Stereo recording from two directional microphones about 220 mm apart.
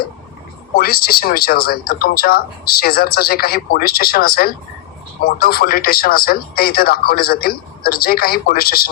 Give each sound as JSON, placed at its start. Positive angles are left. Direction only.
{"t": 0.8, "sound": "speech", "side_deg": 45}